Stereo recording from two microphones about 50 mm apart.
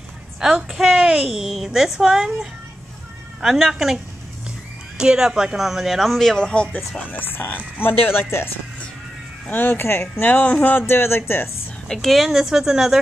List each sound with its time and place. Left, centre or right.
0.4 s speech: centre
7.1 s speech: left
9.5 s speech: left
10.3 s speech: left
11.9 s speech: centre
12.3 s speech: centre